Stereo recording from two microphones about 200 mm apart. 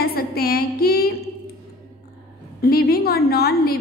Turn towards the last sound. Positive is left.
turn(degrees=50)  # may be behind; listen again after turning